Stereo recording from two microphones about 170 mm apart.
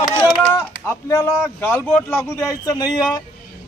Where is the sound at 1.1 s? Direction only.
15° left (ahead or behind).